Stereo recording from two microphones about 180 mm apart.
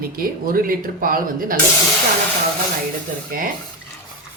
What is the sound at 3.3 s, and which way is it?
Speech, 55° right (ahead or behind).